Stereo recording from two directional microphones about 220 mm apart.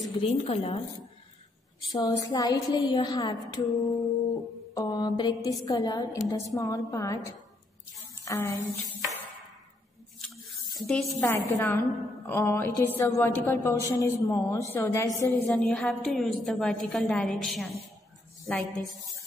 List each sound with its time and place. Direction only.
0.2 s a woman's voice: 25° left (ahead or behind)
1.9 s a woman's voice: 15° left (ahead or behind)
10.8 s a woman's voice: centre (ahead or behind)